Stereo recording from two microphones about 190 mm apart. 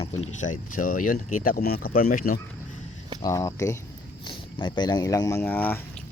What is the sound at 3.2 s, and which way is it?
Speech, 15° left (ahead or behind).